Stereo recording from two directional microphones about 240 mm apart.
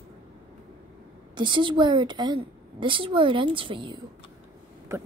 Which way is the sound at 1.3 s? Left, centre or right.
Centre.